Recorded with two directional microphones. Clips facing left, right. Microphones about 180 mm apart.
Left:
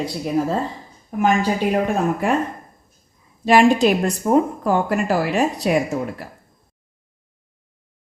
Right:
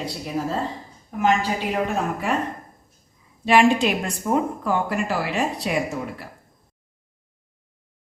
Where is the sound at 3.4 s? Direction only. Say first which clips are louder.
Left 3 dB; 40° left (ahead or behind).